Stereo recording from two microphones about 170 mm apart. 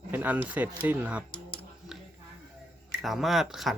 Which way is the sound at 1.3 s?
30° left (ahead or behind).